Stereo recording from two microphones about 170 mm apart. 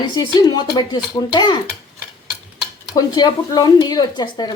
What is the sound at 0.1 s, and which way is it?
Speech, 20° left (ahead or behind).